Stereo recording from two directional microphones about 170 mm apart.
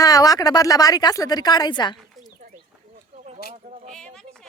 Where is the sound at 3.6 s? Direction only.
45° right (ahead or behind).